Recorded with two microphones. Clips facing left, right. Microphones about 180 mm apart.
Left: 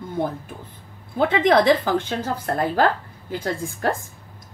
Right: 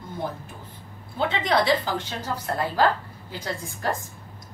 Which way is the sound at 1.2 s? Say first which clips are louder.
Left 6 dB; 50° left (ahead or behind).